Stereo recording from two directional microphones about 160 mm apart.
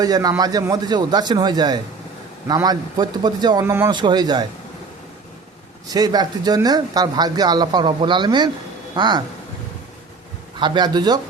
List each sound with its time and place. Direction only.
0.0 s speech: 25° right (ahead or behind)
3.9 s speech: 25° right (ahead or behind)
5.9 s speech: 25° right (ahead or behind)
10.6 s speech: 25° right (ahead or behind)